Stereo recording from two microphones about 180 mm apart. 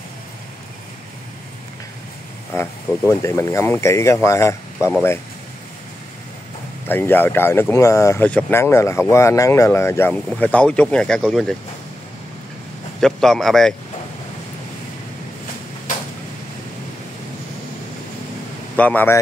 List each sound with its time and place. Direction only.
2.5 s speech: 15° left (ahead or behind)
6.9 s speech: 10° left (ahead or behind)
13.0 s speech: centre (ahead or behind)
18.8 s speech: 10° left (ahead or behind)